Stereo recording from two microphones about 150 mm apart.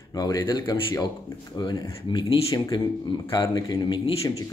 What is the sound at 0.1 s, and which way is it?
Speech, 25° left (ahead or behind).